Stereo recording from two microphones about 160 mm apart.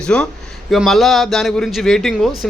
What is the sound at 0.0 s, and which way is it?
A man's voice, 5° left (ahead or behind).